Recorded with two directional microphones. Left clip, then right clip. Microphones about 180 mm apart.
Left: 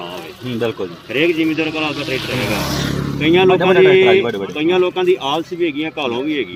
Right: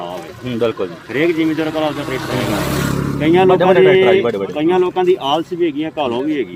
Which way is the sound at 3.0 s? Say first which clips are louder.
Even; 10° right (ahead or behind).